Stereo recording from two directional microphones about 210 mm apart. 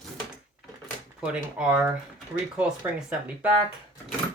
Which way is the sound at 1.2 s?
5° right (ahead or behind).